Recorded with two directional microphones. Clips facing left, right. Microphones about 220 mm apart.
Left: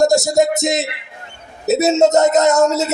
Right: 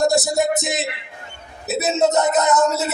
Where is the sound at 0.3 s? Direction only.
40° left (ahead or behind).